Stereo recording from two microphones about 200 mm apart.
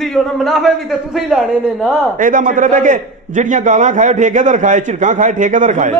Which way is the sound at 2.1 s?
40° right (ahead or behind).